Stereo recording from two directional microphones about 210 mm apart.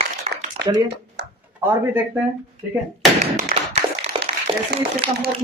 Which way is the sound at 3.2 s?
30° right (ahead or behind).